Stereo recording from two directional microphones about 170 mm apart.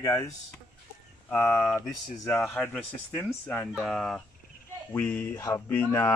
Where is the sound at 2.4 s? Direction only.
Centre (ahead or behind).